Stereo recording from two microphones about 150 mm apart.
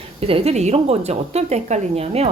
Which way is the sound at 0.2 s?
40° right (ahead or behind).